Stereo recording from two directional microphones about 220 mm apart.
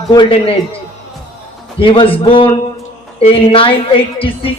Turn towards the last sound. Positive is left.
turn(degrees=25)  # may be behind; listen again after turning